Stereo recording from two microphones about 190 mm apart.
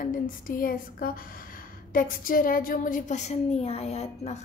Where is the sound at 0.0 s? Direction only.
45° left (ahead or behind).